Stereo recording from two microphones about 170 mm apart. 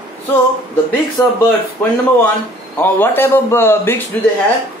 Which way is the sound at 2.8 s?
10° left (ahead or behind).